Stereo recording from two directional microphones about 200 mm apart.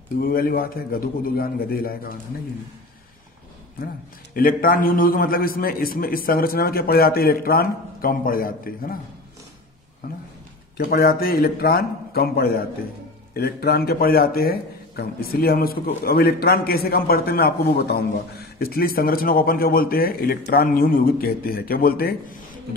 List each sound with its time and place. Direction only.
0.2 s a man's voice: 45° left (ahead or behind)
3.8 s a man's voice: 45° left (ahead or behind)
10.0 s a man's voice: 45° left (ahead or behind)